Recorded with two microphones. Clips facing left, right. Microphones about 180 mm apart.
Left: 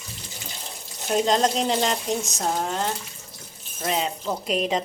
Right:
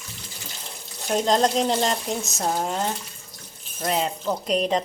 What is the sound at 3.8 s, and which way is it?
Speech, centre (ahead or behind).